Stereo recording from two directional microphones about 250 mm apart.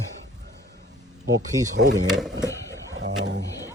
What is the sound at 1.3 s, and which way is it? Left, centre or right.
Speech, right.